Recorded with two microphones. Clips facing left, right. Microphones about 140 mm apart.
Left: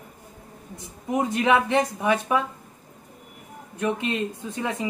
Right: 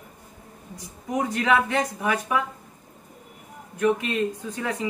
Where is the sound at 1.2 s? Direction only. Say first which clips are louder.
Left 1 dB; 25° left (ahead or behind).